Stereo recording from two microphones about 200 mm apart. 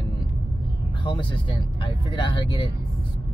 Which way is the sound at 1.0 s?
25° left (ahead or behind).